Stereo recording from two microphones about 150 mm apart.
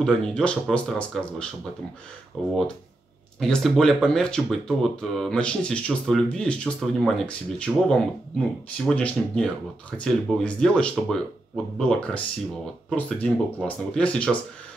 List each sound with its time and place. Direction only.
0.0 s speech: 5° left (ahead or behind)